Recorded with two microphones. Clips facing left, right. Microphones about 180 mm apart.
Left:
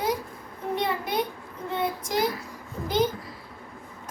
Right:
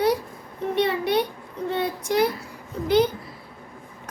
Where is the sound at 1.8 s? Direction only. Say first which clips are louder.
Right 4 dB; 65° right (ahead or behind).